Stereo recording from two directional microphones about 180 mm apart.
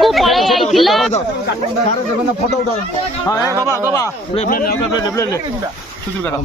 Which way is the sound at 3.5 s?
15° right (ahead or behind).